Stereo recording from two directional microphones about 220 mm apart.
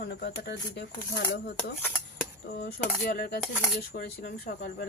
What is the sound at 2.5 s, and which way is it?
Speech, 45° left (ahead or behind).